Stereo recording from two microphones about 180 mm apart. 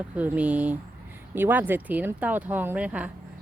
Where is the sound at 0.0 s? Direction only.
10° right (ahead or behind).